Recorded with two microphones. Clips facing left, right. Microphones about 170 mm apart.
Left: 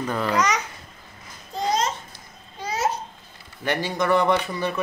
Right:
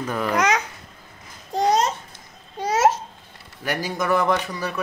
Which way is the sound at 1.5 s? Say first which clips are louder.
Right 4 dB; 80° right.